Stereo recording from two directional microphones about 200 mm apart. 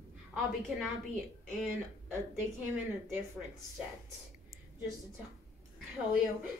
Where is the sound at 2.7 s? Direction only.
5° right (ahead or behind).